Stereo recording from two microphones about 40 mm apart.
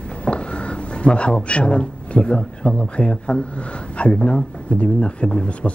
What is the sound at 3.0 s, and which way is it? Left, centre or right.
Speech, left.